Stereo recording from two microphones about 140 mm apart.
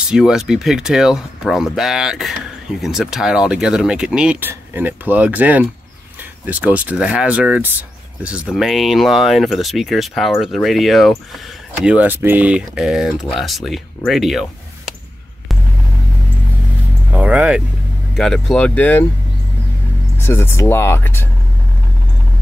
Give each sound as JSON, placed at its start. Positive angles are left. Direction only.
{"t": 0.1, "sound": "speech", "side_deg": -5}
{"t": 17.1, "sound": "speech", "side_deg": -10}
{"t": 18.1, "sound": "speech", "side_deg": 5}
{"t": 20.2, "sound": "speech", "side_deg": 15}